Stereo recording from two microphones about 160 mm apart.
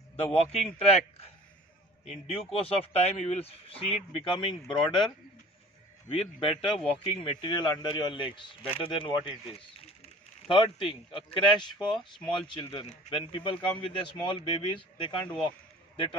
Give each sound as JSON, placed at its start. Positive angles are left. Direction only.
{"t": 0.1, "sound": "a man's voice", "side_deg": 40}
{"t": 2.0, "sound": "speech", "side_deg": 40}
{"t": 6.0, "sound": "speech", "side_deg": 35}
{"t": 10.4, "sound": "speech", "side_deg": 35}